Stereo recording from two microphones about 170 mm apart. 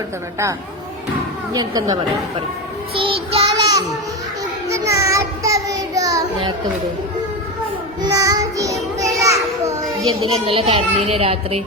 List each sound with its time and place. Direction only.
1.5 s speech: 25° right (ahead or behind)
2.9 s child singing: 30° right (ahead or behind)
3.6 s a sound: 20° right (ahead or behind)
4.7 s child singing: 20° right (ahead or behind)
8.1 s child singing: 20° right (ahead or behind)
9.0 s children playing: 20° right (ahead or behind)
10.1 s a child's voice: 30° right (ahead or behind)